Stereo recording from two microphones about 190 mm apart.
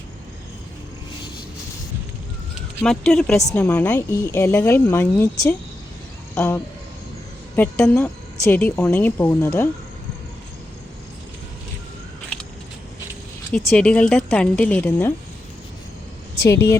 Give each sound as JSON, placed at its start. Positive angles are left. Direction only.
{"t": 2.8, "sound": "speech", "side_deg": 0}
{"t": 7.5, "sound": "speech", "side_deg": 5}
{"t": 13.5, "sound": "speech", "side_deg": 5}
{"t": 16.4, "sound": "speech", "side_deg": 15}